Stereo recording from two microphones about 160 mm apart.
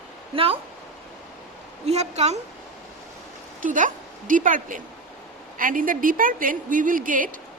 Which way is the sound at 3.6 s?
55° right (ahead or behind).